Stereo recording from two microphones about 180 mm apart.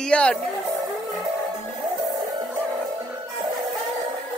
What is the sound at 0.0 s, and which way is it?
Speech, 5° left (ahead or behind).